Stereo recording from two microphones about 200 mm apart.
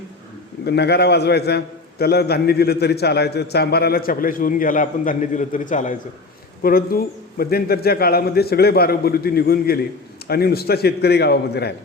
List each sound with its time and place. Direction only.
0.6 s a man's voice: 55° left (ahead or behind)